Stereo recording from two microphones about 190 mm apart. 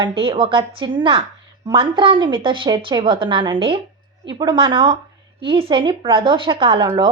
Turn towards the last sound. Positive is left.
turn(degrees=-30)  # may be behind; listen again after turning